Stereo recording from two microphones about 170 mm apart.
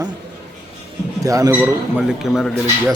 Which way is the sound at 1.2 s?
20° right (ahead or behind).